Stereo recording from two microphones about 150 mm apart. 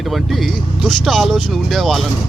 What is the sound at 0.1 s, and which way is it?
Speech, centre (ahead or behind).